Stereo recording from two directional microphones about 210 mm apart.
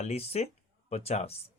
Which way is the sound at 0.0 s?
30° left (ahead or behind).